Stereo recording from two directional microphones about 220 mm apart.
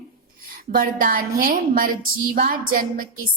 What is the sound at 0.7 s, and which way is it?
A woman's voice, 40° right (ahead or behind).